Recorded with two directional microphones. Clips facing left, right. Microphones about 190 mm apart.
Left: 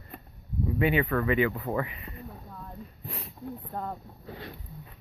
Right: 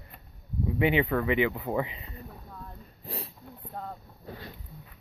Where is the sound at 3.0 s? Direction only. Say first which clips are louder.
Right 5 dB; 35° right (ahead or behind).